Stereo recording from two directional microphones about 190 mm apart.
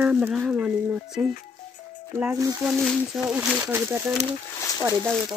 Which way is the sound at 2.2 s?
10° right (ahead or behind).